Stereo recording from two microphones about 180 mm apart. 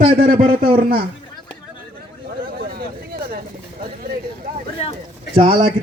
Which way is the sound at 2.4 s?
60° right (ahead or behind).